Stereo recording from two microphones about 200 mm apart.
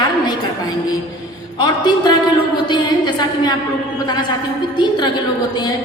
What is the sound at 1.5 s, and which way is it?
Speech, 20° left (ahead or behind).